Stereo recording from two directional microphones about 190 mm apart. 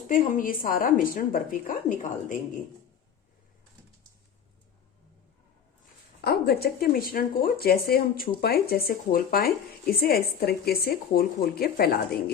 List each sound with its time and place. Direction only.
0.1 s speech: 45° left (ahead or behind)
6.2 s speech: 55° left (ahead or behind)